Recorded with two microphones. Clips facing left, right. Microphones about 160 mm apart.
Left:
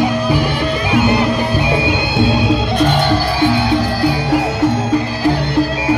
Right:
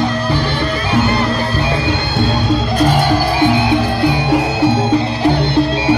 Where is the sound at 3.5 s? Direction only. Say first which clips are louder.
Right 1 dB; 20° right (ahead or behind).